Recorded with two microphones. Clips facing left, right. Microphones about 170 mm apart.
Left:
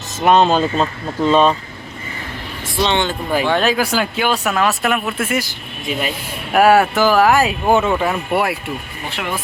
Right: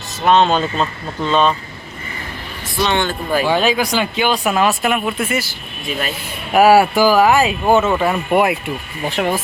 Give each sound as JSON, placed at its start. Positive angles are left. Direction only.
{"t": 0.3, "sound": "speech", "side_deg": 5}
{"t": 2.8, "sound": "speech", "side_deg": 20}
{"t": 3.4, "sound": "speech", "side_deg": 0}
{"t": 5.5, "sound": "speech", "side_deg": 15}
{"t": 6.5, "sound": "speech", "side_deg": -5}
{"t": 8.3, "sound": "speech", "side_deg": -15}
{"t": 9.0, "sound": "speech", "side_deg": -40}